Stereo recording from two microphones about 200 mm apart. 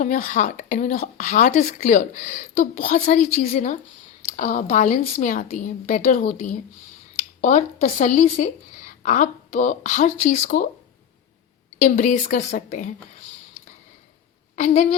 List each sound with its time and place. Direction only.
0.0 s speech: 40° left (ahead or behind)
11.8 s speech: 40° left (ahead or behind)
14.5 s a woman's voice: 35° left (ahead or behind)